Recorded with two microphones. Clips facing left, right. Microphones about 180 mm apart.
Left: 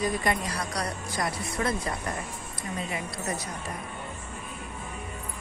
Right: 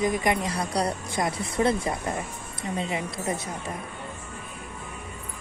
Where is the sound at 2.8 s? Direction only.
25° right (ahead or behind).